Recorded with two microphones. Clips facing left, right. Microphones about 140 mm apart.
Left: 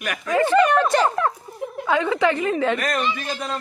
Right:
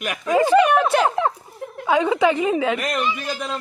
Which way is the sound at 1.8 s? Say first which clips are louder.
Right 2 dB; 15° right (ahead or behind).